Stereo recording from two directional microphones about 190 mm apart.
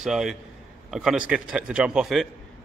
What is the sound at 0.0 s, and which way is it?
A man's voice, centre (ahead or behind).